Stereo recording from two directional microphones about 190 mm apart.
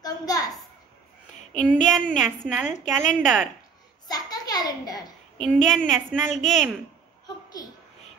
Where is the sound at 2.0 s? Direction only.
5° left (ahead or behind).